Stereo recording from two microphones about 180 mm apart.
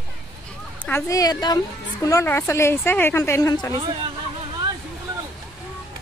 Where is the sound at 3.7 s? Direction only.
25° right (ahead or behind).